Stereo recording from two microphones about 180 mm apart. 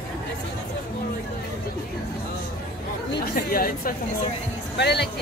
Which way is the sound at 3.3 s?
55° left (ahead or behind).